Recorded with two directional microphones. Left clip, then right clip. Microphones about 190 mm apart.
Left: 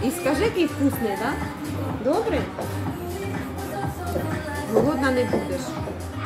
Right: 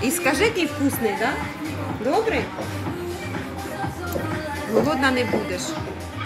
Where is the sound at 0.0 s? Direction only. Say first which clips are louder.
Right 2 dB; 15° right (ahead or behind).